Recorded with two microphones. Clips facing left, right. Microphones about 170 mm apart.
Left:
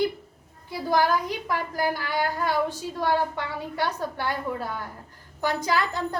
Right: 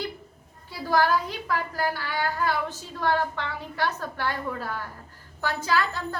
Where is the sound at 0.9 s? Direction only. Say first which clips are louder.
Even; 15° left (ahead or behind).